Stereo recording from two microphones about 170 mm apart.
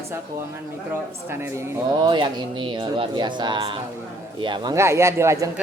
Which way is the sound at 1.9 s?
30° right (ahead or behind).